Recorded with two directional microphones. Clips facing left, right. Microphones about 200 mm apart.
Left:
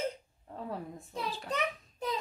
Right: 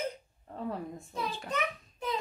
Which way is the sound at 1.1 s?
35° left (ahead or behind).